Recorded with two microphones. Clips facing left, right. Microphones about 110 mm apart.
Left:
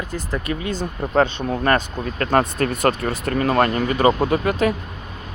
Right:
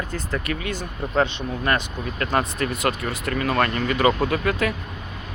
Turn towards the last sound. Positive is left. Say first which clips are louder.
# left 4 dB
turn(degrees=25)  # may be behind; listen again after turning